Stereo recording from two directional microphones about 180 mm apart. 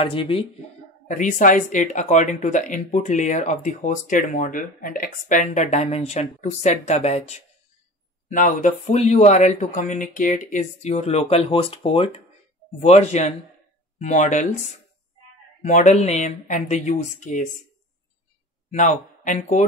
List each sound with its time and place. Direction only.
0.0 s speech: 30° left (ahead or behind)
1.0 s speech: 45° left (ahead or behind)
15.6 s speech: 40° left (ahead or behind)
18.7 s a man's voice: 45° left (ahead or behind)